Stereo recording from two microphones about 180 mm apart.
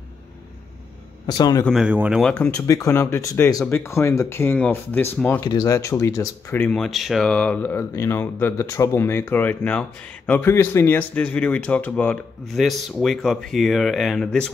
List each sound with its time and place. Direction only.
1.2 s speech: 25° left (ahead or behind)
1.7 s speech: 5° right (ahead or behind)
5.4 s speech: 20° left (ahead or behind); by 14.5 s 5° left (ahead or behind)